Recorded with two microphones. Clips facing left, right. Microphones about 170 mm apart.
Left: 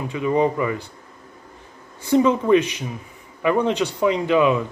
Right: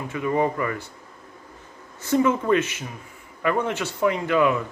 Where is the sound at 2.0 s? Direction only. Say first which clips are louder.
Left 3 dB; 15° left (ahead or behind).